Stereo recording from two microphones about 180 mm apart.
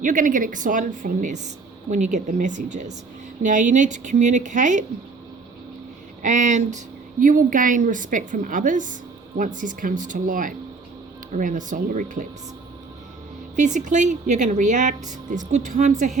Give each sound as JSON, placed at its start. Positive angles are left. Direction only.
{"t": 0.0, "sound": "a woman's voice", "side_deg": -45}
{"t": 6.2, "sound": "a woman's voice", "side_deg": -45}
{"t": 13.6, "sound": "a woman's voice", "side_deg": -45}